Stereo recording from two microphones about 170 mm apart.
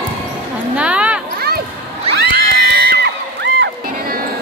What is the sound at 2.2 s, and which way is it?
Music, 60° right (ahead or behind).